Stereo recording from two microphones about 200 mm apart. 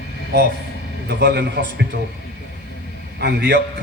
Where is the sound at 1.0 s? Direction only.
55° right (ahead or behind).